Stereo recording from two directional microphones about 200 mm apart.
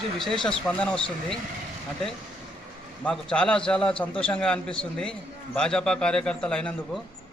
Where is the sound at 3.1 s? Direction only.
5° left (ahead or behind).